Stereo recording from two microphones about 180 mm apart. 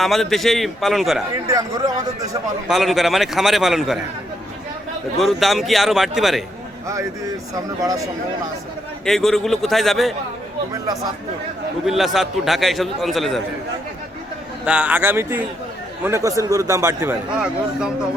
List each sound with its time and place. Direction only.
0.0 s a man's voice: centre (ahead or behind)
1.5 s speech: 20° right (ahead or behind)
2.6 s a man's voice: centre (ahead or behind)
5.2 s a man's voice: centre (ahead or behind)
7.5 s speech: 20° right (ahead or behind)
9.0 s a man's voice: centre (ahead or behind)
11.9 s a man's voice: centre (ahead or behind)
14.6 s a man's voice: 5° right (ahead or behind)